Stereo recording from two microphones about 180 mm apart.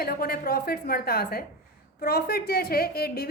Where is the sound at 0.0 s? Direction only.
55° left (ahead or behind).